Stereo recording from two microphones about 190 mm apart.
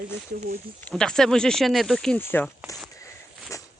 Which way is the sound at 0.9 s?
5° left (ahead or behind).